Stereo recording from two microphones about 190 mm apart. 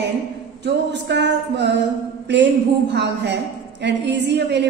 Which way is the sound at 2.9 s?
65° right (ahead or behind).